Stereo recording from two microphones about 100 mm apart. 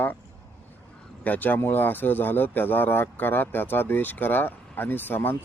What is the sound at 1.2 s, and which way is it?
Speech, 15° left (ahead or behind).